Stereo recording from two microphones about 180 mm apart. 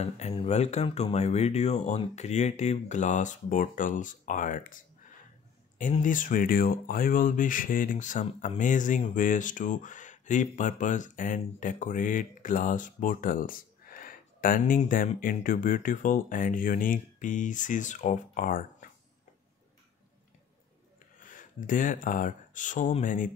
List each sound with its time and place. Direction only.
0.4 s speech: 40° left (ahead or behind)
5.8 s speech: 45° left (ahead or behind)
21.2 s speech: 50° left (ahead or behind)